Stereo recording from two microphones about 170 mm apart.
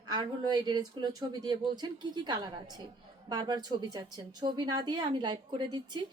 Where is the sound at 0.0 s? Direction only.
25° right (ahead or behind).